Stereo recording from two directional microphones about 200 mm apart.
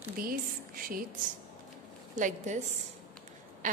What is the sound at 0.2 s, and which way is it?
Speech, 45° right (ahead or behind).